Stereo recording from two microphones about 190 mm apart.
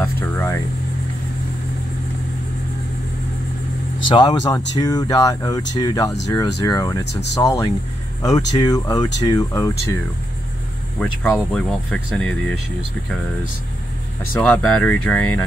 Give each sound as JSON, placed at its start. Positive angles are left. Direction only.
{"t": 0.0, "sound": "a sound", "side_deg": 10}
{"t": 4.1, "sound": "speech", "side_deg": 20}
{"t": 7.1, "sound": "speech", "side_deg": 65}
{"t": 7.3, "sound": "speech", "side_deg": 15}
{"t": 11.0, "sound": "speech", "side_deg": 5}
{"t": 14.4, "sound": "speech", "side_deg": 5}